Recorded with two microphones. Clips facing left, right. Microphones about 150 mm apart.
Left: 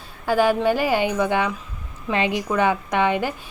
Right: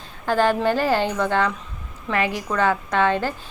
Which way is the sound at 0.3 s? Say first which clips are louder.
Left 1 dB; 10° left (ahead or behind).